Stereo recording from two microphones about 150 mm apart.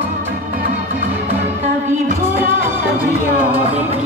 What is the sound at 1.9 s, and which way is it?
Music, 55° right (ahead or behind).